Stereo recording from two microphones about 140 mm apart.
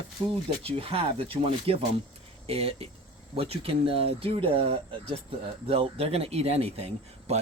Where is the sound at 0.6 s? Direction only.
40° right (ahead or behind).